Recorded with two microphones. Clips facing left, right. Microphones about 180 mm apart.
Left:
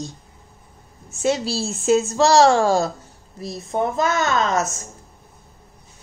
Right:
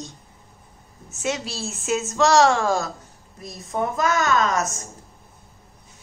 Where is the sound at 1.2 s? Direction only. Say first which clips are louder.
Left 6 dB; 30° left (ahead or behind).